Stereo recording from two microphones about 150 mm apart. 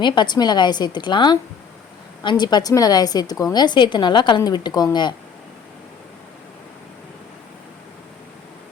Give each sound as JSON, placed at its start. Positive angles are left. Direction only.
{"t": 0.0, "sound": "a woman's voice", "side_deg": 30}